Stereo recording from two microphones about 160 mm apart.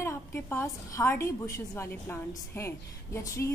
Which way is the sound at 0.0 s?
15° left (ahead or behind).